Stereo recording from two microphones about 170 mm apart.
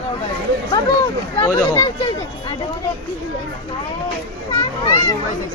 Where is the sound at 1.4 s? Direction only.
20° left (ahead or behind).